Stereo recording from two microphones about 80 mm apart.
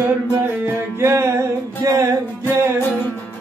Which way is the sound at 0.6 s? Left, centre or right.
Right.